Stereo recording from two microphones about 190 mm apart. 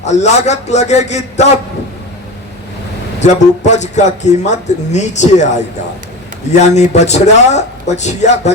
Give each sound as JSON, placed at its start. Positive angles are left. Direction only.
{"t": 0.0, "sound": "a man's voice", "side_deg": 35}
{"t": 3.2, "sound": "a man's voice", "side_deg": 35}